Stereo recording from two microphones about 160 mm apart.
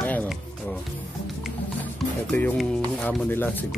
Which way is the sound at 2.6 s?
5° left (ahead or behind).